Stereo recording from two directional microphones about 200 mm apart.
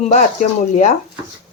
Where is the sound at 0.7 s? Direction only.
35° left (ahead or behind).